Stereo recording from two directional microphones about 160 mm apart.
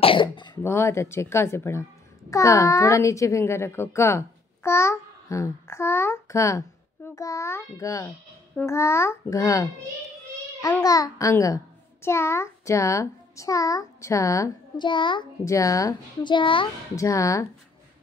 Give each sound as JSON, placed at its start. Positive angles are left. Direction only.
{"t": 0.0, "sound": "throat clearing", "side_deg": 30}
{"t": 0.6, "sound": "a child's voice", "side_deg": 15}
{"t": 10.8, "sound": "a child's voice", "side_deg": 20}
{"t": 16.9, "sound": "speech", "side_deg": 20}